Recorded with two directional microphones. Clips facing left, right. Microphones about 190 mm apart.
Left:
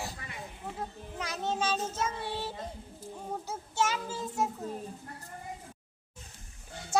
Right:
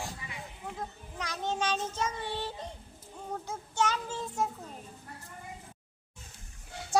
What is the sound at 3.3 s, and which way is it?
A child's voice, 10° left (ahead or behind).